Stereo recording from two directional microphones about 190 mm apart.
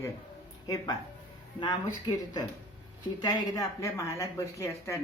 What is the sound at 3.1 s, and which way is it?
Speech, 20° left (ahead or behind).